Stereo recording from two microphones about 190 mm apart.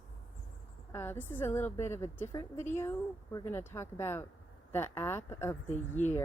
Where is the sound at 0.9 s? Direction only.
10° left (ahead or behind).